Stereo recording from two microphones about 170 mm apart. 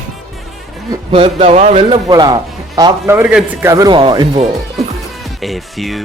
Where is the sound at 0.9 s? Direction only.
30° right (ahead or behind).